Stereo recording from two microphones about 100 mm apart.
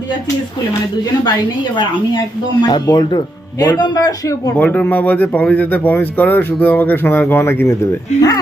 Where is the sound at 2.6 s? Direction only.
45° left (ahead or behind).